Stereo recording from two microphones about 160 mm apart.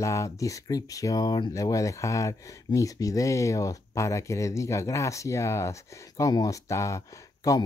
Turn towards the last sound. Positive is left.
turn(degrees=20)  # may be behind; listen again after turning